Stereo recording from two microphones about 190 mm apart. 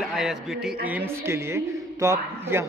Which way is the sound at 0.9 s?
15° right (ahead or behind).